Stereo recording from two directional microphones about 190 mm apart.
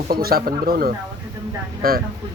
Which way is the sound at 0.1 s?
55° right (ahead or behind).